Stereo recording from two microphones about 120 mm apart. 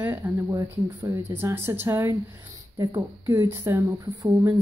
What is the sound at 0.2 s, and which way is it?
Speech, 30° right (ahead or behind).